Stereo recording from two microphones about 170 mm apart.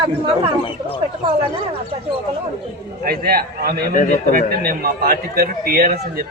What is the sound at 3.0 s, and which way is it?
Speech, 65° right (ahead or behind).